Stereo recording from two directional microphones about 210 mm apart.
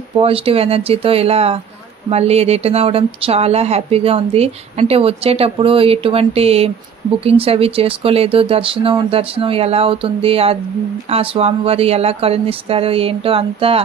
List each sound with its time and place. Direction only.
0.2 s speech: 25° right (ahead or behind)